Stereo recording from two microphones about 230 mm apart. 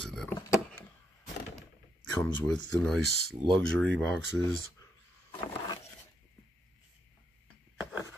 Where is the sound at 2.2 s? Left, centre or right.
Centre.